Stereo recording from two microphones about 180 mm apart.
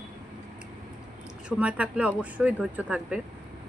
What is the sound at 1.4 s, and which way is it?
Speech, 5° right (ahead or behind).